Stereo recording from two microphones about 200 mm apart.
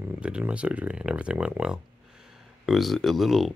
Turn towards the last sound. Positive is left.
turn(degrees=0)  # may be behind; listen again after turning